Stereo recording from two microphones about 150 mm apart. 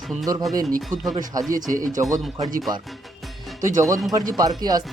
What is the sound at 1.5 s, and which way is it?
Speech, 60° right (ahead or behind).